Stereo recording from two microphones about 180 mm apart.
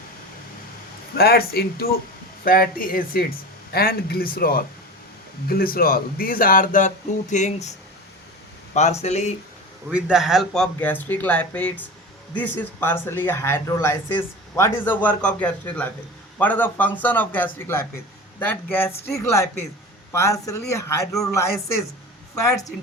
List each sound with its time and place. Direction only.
1.1 s speech: 60° left (ahead or behind); by 7.7 s 40° left (ahead or behind)
8.7 s speech: 40° left (ahead or behind)
9.9 s speech: 5° right (ahead or behind); by 21.0 s 15° left (ahead or behind)